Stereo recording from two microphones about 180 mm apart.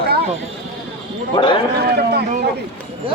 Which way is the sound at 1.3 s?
25° left (ahead or behind).